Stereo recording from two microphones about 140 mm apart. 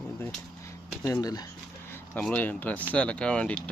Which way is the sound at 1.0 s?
25° left (ahead or behind).